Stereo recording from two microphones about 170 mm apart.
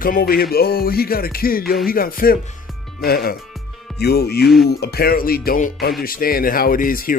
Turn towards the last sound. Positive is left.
turn(degrees=55)  # may be behind; listen again after turning